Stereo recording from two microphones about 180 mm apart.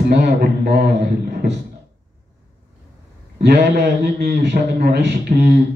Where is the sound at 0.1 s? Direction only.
65° right (ahead or behind).